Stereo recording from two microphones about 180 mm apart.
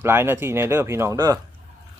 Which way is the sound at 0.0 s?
10° right (ahead or behind).